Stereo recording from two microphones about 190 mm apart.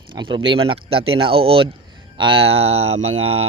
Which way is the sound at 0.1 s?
25° right (ahead or behind).